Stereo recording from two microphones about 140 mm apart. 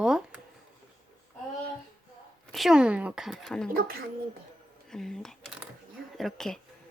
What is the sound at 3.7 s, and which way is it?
Speech, 90° right.